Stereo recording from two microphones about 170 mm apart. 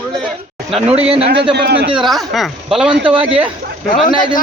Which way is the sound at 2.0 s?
Centre (ahead or behind).